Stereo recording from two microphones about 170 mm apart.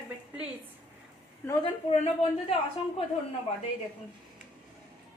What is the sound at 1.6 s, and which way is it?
Speech, 35° left (ahead or behind).